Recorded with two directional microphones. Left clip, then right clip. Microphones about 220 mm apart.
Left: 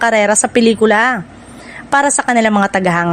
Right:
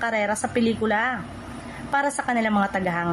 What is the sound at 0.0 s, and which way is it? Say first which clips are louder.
A woman's voice: left 12 dB; 45° left (ahead or behind).